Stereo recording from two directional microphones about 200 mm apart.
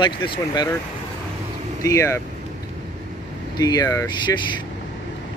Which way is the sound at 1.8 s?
15° left (ahead or behind).